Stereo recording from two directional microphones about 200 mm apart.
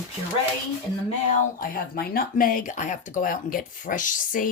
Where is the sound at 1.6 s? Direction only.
45° left (ahead or behind).